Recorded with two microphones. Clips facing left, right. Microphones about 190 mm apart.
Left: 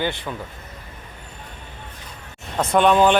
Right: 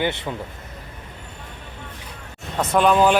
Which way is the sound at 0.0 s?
20° right (ahead or behind).